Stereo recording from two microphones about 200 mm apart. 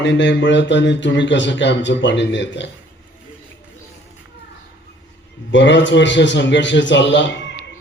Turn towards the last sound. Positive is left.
turn(degrees=65)  # may be behind; listen again after turning